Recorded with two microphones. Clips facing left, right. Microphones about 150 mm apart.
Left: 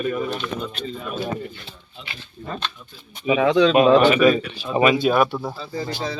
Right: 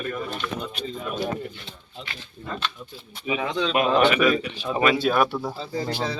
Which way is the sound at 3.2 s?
85° left.